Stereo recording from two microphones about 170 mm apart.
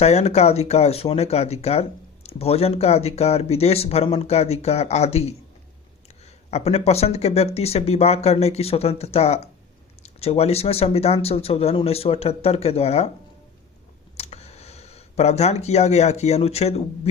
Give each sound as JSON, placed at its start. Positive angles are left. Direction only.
{"t": 0.0, "sound": "speech", "side_deg": 40}
{"t": 6.5, "sound": "speech", "side_deg": 40}
{"t": 14.2, "sound": "speech", "side_deg": 40}